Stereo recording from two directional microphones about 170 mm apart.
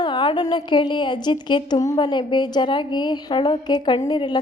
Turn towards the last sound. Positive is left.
turn(degrees=25)  # may be behind; listen again after turning